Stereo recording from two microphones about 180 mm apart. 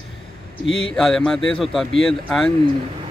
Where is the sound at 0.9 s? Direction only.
5° left (ahead or behind).